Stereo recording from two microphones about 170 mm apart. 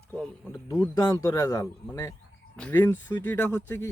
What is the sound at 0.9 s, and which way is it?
Speech, 15° left (ahead or behind).